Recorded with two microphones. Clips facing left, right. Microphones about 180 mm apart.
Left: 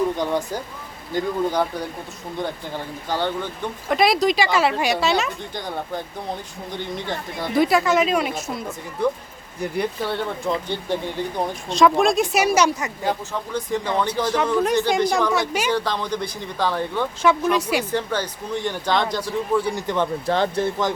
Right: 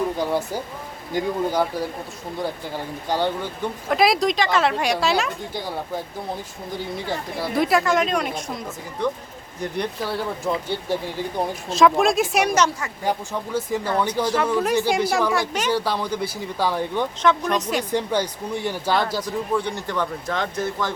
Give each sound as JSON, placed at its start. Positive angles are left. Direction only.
{"t": 0.2, "sound": "speech", "side_deg": -5}
{"t": 3.8, "sound": "speech", "side_deg": 0}
{"t": 13.1, "sound": "speech", "side_deg": -10}
{"t": 15.7, "sound": "speech", "side_deg": -10}
{"t": 17.2, "sound": "speech", "side_deg": 10}
{"t": 17.9, "sound": "speech", "side_deg": -15}
{"t": 19.2, "sound": "speech", "side_deg": 10}
{"t": 20.2, "sound": "speech", "side_deg": 30}